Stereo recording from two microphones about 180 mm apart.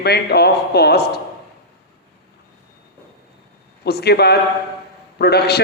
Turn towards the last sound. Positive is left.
turn(degrees=65)  # may be behind; listen again after turning